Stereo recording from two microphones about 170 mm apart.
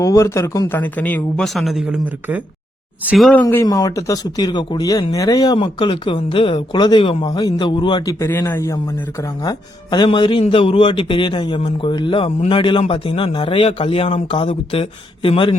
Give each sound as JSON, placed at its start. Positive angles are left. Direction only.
{"t": 0.0, "sound": "speech", "side_deg": 20}
{"t": 3.4, "sound": "a man's voice", "side_deg": 20}